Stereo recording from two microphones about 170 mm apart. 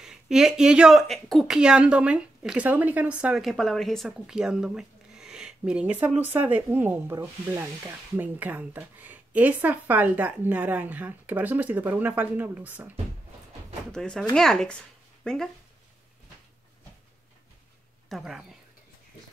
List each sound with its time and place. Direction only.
0.0 s speech: 5° right (ahead or behind)
6.3 s sizzle: 10° right (ahead or behind)
13.9 s speech: 5° left (ahead or behind)
18.0 s speech: centre (ahead or behind)